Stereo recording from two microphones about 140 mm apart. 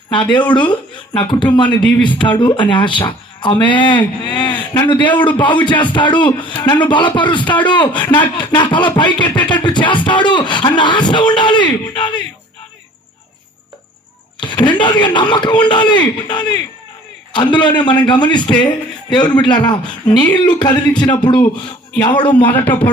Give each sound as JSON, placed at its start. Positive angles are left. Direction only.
{"t": 0.1, "sound": "speech", "side_deg": 35}
{"t": 4.4, "sound": "a sound", "side_deg": 35}
{"t": 5.2, "sound": "speech", "side_deg": 35}
{"t": 14.4, "sound": "speech", "side_deg": 35}
{"t": 22.4, "sound": "speech", "side_deg": 15}